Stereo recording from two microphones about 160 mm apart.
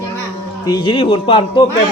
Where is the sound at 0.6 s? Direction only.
25° left (ahead or behind).